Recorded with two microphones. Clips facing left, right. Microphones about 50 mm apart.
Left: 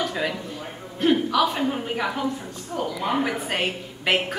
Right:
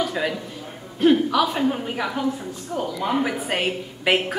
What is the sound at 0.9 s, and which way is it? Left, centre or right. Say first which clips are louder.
A woman's voice: right 3 dB; centre.